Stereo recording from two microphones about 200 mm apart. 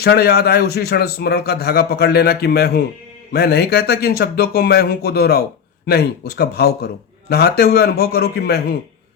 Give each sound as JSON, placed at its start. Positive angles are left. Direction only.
{"t": 0.0, "sound": "a man's voice", "side_deg": 55}